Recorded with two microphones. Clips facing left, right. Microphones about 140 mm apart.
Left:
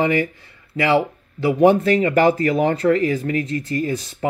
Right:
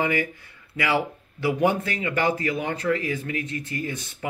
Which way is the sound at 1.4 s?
30° left (ahead or behind).